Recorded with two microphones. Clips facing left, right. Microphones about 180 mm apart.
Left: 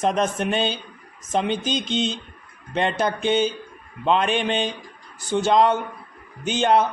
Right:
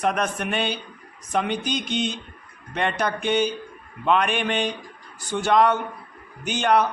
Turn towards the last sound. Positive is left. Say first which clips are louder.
# left 2 dB
turn(degrees=25)  # may be behind; listen again after turning